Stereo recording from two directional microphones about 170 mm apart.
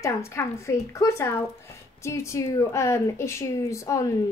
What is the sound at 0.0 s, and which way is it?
Speech, 15° left (ahead or behind).